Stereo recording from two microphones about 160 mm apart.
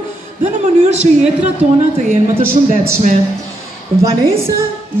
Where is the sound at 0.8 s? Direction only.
45° right (ahead or behind).